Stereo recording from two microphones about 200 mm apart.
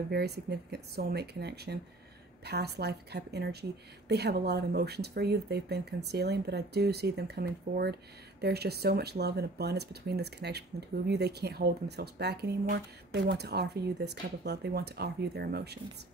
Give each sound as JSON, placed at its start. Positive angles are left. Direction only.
{"t": 0.1, "sound": "speech", "side_deg": -55}